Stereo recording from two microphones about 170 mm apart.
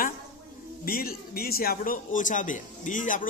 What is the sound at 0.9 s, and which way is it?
A man's voice, 60° left (ahead or behind).